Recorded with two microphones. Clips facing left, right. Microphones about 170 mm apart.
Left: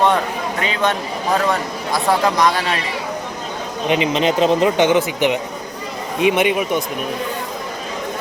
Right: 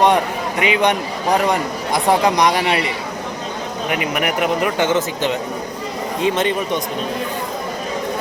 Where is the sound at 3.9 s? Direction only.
20° left (ahead or behind).